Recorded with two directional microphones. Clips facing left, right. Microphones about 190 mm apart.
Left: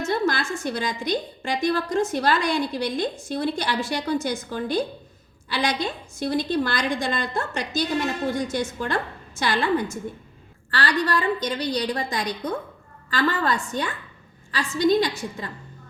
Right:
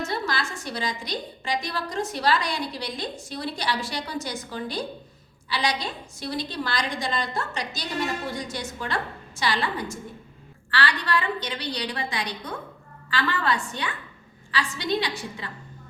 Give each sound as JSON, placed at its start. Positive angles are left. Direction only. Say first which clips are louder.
{"t": 0.0, "sound": "a woman's voice", "louder": "left 5 dB", "side_deg": 50}